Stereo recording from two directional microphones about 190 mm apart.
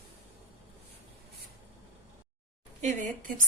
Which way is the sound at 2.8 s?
40° right (ahead or behind).